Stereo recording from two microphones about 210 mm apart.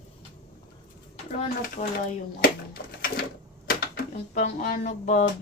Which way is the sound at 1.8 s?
35° left (ahead or behind).